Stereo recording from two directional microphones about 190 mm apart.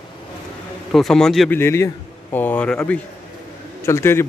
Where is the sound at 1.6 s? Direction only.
15° left (ahead or behind).